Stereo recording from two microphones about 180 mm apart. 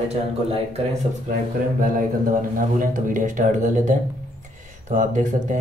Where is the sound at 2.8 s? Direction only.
45° right (ahead or behind).